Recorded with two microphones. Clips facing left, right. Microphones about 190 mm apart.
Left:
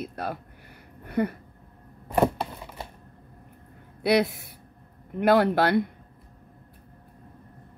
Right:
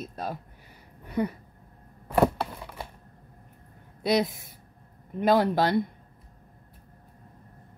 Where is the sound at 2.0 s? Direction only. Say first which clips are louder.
Even; 20° left (ahead or behind).